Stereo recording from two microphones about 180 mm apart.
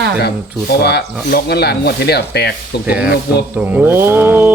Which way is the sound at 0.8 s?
65° left (ahead or behind).